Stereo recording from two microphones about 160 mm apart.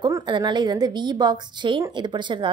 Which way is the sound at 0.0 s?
25° right (ahead or behind).